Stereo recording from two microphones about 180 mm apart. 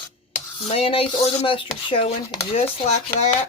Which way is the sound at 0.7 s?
30° left (ahead or behind).